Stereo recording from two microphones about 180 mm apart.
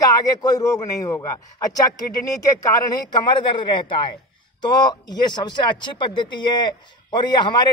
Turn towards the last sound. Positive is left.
turn(degrees=25)  # may be behind; listen again after turning